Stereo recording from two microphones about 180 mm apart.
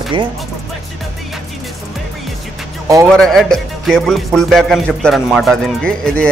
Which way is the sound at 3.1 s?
Centre (ahead or behind).